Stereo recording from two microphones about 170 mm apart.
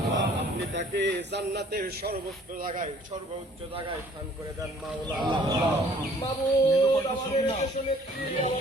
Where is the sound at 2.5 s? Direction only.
50° right (ahead or behind).